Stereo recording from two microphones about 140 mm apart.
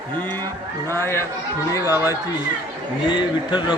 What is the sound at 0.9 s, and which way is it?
Speech, 20° left (ahead or behind).